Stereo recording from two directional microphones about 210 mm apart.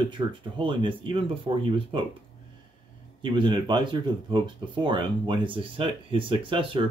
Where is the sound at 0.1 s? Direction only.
25° right (ahead or behind).